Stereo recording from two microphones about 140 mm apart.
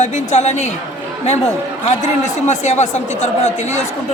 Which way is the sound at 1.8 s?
55° left (ahead or behind).